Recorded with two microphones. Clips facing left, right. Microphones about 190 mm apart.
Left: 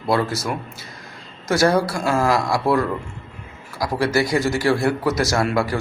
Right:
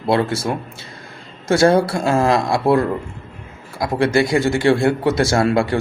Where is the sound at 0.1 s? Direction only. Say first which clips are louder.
Right 3 dB; 25° right (ahead or behind).